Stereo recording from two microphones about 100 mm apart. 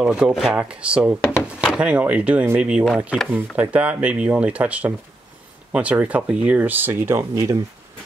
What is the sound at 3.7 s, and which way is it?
Speech, 15° right (ahead or behind).